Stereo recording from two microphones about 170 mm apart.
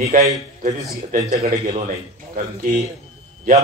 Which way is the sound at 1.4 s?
40° right (ahead or behind).